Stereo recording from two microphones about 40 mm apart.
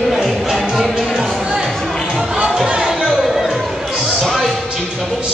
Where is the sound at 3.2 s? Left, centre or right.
Centre.